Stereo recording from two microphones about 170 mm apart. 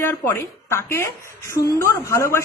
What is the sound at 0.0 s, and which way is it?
Speech, 15° left (ahead or behind).